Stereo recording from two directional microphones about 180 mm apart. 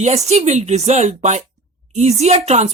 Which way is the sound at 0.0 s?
40° right (ahead or behind).